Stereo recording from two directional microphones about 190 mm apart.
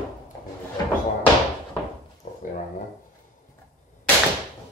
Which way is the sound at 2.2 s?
40° left (ahead or behind).